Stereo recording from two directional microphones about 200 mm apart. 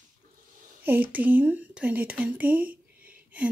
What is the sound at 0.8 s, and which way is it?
Speech, 10° right (ahead or behind).